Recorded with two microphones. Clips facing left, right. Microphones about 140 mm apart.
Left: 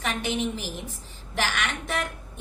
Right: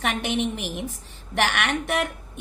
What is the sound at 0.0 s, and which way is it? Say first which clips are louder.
A woman's voice: right 3 dB; 60° right (ahead or behind).